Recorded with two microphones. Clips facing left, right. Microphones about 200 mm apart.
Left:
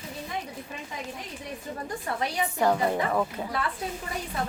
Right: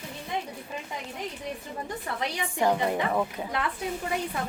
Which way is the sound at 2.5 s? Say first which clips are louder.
Even; 15° right (ahead or behind).